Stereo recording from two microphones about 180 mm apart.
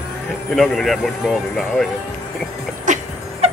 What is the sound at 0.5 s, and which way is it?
Speech, centre (ahead or behind).